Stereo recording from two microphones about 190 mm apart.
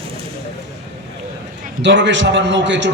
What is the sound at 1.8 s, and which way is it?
A man's voice, 70° right (ahead or behind).